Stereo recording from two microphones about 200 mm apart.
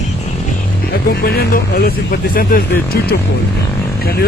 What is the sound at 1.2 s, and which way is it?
Speech, 50° left (ahead or behind).